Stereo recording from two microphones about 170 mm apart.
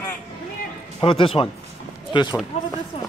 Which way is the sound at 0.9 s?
30° left (ahead or behind).